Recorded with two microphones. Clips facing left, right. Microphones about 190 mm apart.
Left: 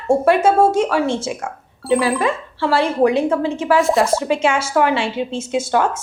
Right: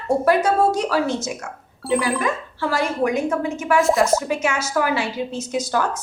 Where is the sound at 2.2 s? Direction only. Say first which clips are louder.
Left 4 dB; 30° left (ahead or behind).